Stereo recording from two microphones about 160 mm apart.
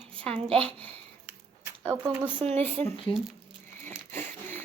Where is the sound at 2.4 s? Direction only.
40° right (ahead or behind).